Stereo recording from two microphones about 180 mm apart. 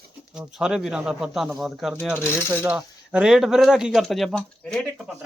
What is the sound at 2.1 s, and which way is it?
Speech, 15° left (ahead or behind).